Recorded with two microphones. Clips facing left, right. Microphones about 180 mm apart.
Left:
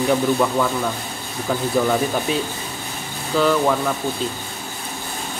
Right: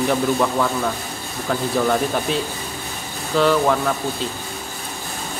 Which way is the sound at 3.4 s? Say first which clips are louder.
Right 1 dB; centre (ahead or behind).